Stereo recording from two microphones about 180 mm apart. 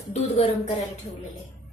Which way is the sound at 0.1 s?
35° left (ahead or behind).